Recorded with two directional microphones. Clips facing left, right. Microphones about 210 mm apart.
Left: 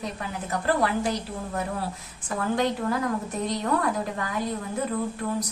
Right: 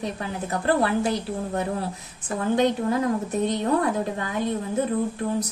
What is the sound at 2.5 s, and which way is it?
Speech, 20° right (ahead or behind).